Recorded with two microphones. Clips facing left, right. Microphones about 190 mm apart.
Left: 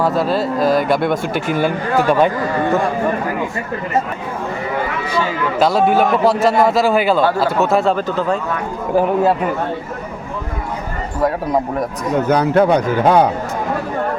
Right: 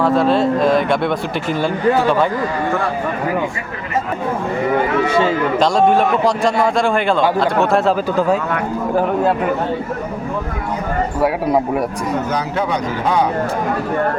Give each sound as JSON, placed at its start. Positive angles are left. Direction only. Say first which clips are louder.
{"t": 0.0, "sound": "speech", "louder": "right 3 dB", "side_deg": 5}
{"t": 5.5, "sound": "speech", "louder": "left 1 dB", "side_deg": 5}
{"t": 11.2, "sound": "a man's voice", "louder": "even", "side_deg": -10}
{"t": 12.3, "sound": "a man's voice", "louder": "left 7 dB", "side_deg": 55}